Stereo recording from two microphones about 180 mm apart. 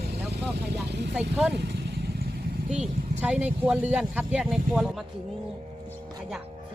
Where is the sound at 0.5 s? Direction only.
70° right (ahead or behind).